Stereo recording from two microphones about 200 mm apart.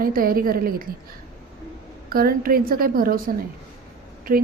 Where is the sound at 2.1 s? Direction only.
45° right (ahead or behind).